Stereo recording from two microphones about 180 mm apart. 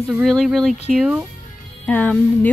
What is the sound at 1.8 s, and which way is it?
Speech, 10° left (ahead or behind).